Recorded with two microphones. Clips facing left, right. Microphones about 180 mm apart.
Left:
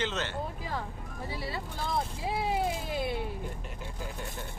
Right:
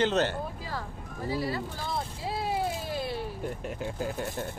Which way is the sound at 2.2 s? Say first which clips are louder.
Right 1 dB; 15° left (ahead or behind).